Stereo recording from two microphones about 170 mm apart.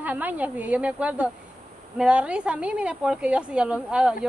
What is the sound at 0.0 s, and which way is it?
A woman's voice, 10° right (ahead or behind).